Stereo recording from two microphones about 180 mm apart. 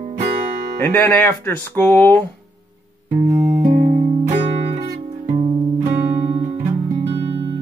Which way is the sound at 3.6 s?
40° right (ahead or behind).